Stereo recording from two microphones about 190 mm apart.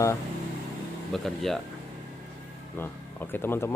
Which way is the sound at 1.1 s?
Centre (ahead or behind).